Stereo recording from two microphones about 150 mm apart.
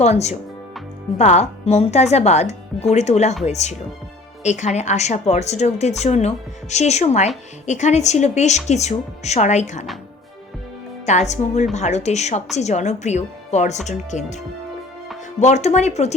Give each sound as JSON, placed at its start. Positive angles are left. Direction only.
{"t": 0.0, "sound": "a woman's voice", "side_deg": 50}
{"t": 11.0, "sound": "a woman's voice", "side_deg": 50}